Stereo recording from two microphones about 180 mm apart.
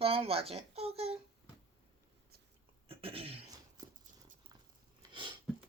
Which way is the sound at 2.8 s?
30° right (ahead or behind).